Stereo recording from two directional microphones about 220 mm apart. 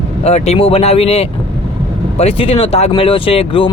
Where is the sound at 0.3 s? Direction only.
30° left (ahead or behind).